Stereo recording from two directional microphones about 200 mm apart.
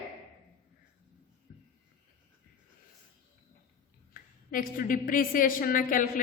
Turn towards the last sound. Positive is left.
turn(degrees=45)  # may be behind; listen again after turning